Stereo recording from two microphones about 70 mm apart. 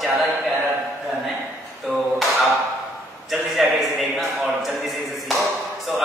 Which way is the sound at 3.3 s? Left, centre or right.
Centre.